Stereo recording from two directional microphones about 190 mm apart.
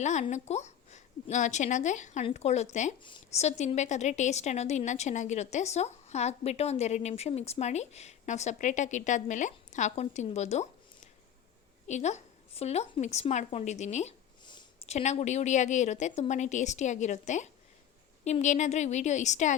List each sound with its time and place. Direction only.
0.0 s a woman's voice: 40° left (ahead or behind)